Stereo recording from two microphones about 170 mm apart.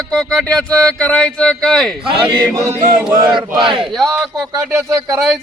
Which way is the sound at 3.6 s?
30° right (ahead or behind).